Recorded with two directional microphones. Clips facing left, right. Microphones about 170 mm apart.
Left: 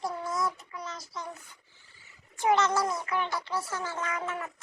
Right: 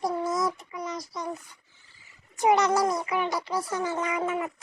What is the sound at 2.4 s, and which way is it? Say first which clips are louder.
Speech: right 4 dB; 15° right (ahead or behind).